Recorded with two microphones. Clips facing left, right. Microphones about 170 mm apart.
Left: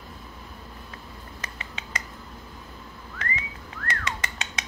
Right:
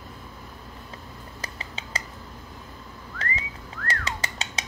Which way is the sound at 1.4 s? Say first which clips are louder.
Right 2 dB; 30° right (ahead or behind).